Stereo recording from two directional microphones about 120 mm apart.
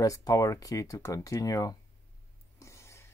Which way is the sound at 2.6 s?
25° left (ahead or behind).